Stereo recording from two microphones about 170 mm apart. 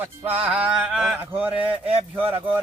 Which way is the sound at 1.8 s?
35° right (ahead or behind).